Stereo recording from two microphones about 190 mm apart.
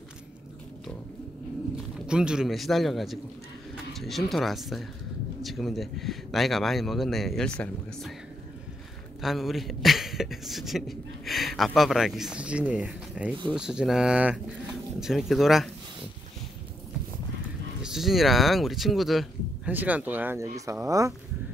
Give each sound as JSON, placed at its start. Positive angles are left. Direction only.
{"t": 2.0, "sound": "speech", "side_deg": -5}
{"t": 9.2, "sound": "speech", "side_deg": 0}
{"t": 17.8, "sound": "speech", "side_deg": 0}